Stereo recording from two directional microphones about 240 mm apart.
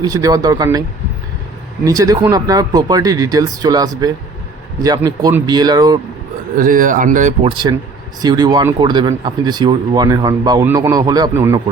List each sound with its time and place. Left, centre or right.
0.0 s speech: centre
6.6 s speech: right
7.5 s speech: centre